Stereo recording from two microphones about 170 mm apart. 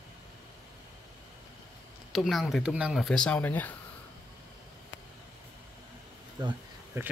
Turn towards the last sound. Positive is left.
turn(degrees=-15)  # may be behind; listen again after turning